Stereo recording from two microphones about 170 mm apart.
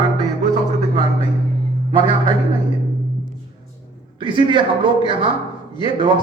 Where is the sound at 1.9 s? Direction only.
30° right (ahead or behind).